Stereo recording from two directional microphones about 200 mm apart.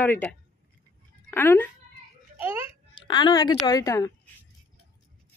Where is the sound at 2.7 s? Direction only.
25° left (ahead or behind).